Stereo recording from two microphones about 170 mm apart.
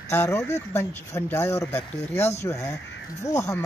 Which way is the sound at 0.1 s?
15° left (ahead or behind).